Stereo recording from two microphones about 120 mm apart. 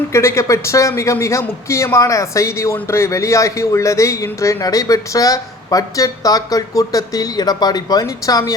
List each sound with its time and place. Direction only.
0.1 s a man's voice: 25° left (ahead or behind)